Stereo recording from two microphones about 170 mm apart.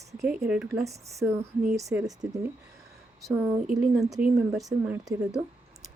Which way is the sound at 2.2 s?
5° right (ahead or behind).